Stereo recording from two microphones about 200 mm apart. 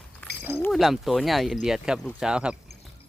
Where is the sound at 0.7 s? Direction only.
Centre (ahead or behind).